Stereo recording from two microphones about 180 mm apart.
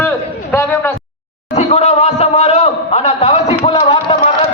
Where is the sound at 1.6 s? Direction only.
35° left (ahead or behind).